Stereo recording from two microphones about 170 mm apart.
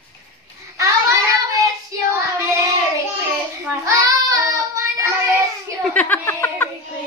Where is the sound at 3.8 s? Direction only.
20° right (ahead or behind).